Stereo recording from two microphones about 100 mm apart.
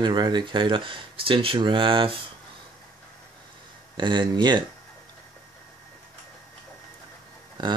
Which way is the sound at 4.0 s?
50° right (ahead or behind).